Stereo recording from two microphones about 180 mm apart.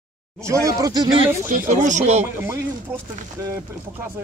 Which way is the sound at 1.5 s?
45° right (ahead or behind).